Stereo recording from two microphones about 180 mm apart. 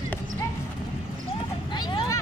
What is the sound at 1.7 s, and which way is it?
Vehicle, 25° left (ahead or behind).